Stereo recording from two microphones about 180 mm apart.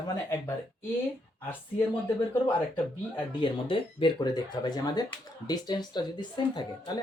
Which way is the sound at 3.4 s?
30° left (ahead or behind).